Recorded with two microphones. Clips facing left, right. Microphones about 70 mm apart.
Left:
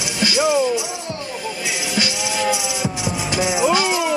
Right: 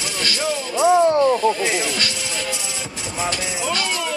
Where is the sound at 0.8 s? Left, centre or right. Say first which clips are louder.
Right 14 dB; right.